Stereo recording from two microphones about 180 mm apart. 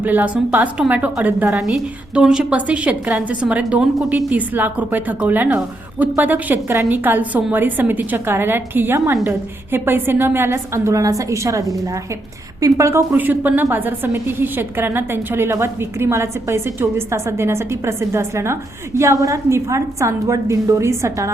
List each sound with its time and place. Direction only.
0.0 s a woman's voice: 10° right (ahead or behind)